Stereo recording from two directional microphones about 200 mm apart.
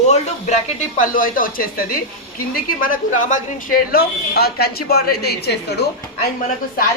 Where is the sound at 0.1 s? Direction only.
35° left (ahead or behind); by 5.5 s 55° left (ahead or behind).